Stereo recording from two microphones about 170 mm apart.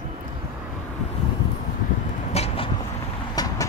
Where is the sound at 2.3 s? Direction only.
40° left (ahead or behind).